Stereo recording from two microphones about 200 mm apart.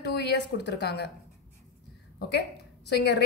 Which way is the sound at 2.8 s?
55° left (ahead or behind).